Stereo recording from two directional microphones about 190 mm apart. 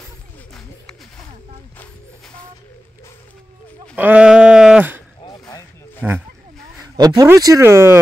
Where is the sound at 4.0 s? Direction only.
5° right (ahead or behind).